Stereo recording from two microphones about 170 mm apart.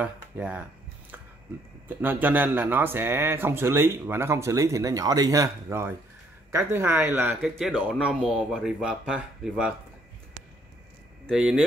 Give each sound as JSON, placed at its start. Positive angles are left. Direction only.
{"t": 0.0, "sound": "speech", "side_deg": -10}
{"t": 1.9, "sound": "a man's voice", "side_deg": -10}
{"t": 7.4, "sound": "speech", "side_deg": 0}
{"t": 11.2, "sound": "speech", "side_deg": -5}